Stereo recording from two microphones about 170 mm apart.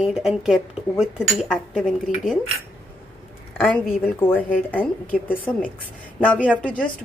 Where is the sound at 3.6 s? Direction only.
5° right (ahead or behind).